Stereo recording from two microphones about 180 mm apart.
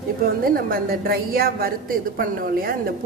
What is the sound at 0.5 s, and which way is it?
A woman's voice, 55° right (ahead or behind).